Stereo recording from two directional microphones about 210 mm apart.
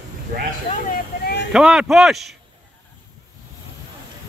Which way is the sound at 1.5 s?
Centre (ahead or behind).